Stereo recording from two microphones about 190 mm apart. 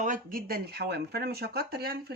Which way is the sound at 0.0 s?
45° right (ahead or behind).